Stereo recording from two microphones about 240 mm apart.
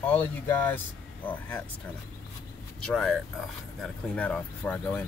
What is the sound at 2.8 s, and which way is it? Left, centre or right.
Speech, centre.